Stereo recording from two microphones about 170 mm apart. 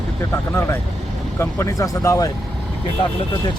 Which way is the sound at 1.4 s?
15° left (ahead or behind).